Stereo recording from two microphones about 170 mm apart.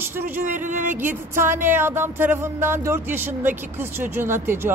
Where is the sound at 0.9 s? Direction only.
10° right (ahead or behind).